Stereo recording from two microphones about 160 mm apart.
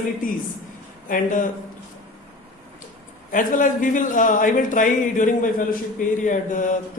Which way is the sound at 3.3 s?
55° left (ahead or behind).